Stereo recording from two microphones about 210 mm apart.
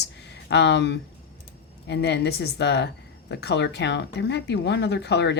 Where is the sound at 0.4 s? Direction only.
55° left (ahead or behind).